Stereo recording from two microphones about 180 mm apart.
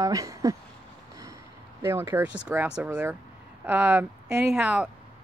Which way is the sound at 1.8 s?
15° right (ahead or behind).